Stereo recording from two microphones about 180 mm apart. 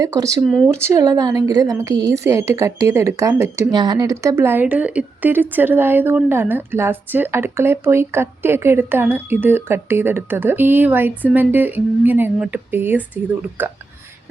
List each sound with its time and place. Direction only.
0.0 s speech: 20° right (ahead or behind)
0.4 s speech: centre (ahead or behind)
0.7 s a woman's voice: 15° right (ahead or behind)